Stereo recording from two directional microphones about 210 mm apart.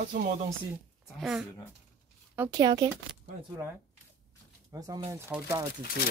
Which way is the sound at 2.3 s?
20° right (ahead or behind).